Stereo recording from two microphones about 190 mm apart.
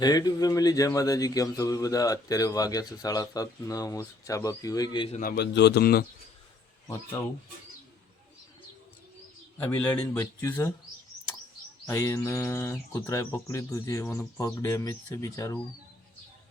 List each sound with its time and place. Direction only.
0.0 s speech: 20° left (ahead or behind)
5.4 s a man's voice: 60° left (ahead or behind)
10.0 s bird: 15° left (ahead or behind)
11.9 s bird: 15° left (ahead or behind)